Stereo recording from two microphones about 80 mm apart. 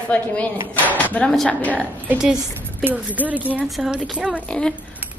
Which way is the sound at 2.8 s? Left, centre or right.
Right.